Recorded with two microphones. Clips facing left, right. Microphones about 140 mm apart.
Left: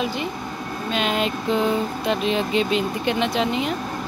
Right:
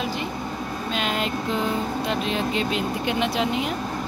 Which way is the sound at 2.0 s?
Centre (ahead or behind).